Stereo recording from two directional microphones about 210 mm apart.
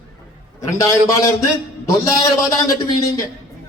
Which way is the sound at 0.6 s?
15° left (ahead or behind).